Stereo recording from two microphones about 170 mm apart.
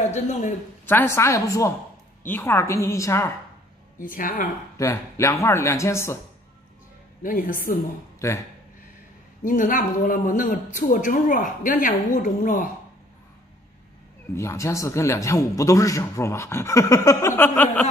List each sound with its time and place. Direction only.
0.0 s a man's voice: 45° left (ahead or behind)
0.8 s a man's voice: 15° left (ahead or behind)
4.0 s speech: 55° left (ahead or behind)
4.7 s a man's voice: 15° left (ahead or behind)
7.2 s a woman's voice: 55° left (ahead or behind)
8.2 s a man's voice: 15° left (ahead or behind)
9.4 s speech: 50° left (ahead or behind)
14.3 s a man's voice: 15° left (ahead or behind)